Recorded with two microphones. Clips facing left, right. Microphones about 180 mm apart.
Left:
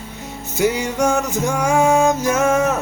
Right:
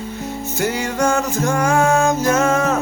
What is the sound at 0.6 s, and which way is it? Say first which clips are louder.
Music: left 2 dB; 15° left (ahead or behind).